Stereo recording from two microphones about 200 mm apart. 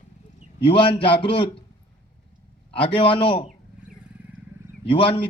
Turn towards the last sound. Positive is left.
turn(degrees=25)  # may be behind; listen again after turning